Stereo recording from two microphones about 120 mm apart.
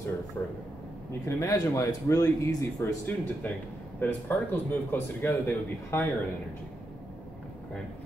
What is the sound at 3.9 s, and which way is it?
A man's voice, 15° left (ahead or behind).